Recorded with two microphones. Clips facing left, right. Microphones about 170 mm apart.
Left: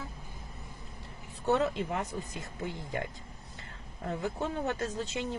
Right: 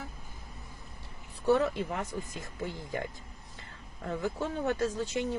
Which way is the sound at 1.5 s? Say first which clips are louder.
Right 2 dB; 20° left (ahead or behind).